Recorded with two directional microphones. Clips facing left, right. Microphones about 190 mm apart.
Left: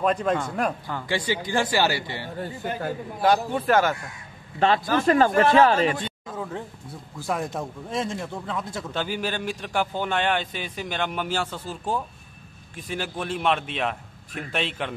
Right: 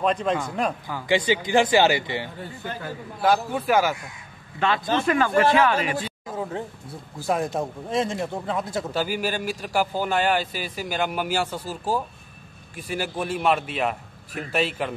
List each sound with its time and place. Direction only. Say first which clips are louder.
0.0 s a man's voice: even; 5° left (ahead or behind)
1.0 s speech: right 5 dB; 20° right (ahead or behind)
3.2 s a man's voice: even; 5° right (ahead or behind)
4.6 s a man's voice: left 2 dB; 35° left (ahead or behind)
5.9 s a sound: right 2 dB; 5° right (ahead or behind)
6.3 s speech: right 5 dB; 25° right (ahead or behind)
8.4 s speech: right 4 dB; 35° right (ahead or behind)
8.9 s a man's voice: right 1 dB; 10° right (ahead or behind)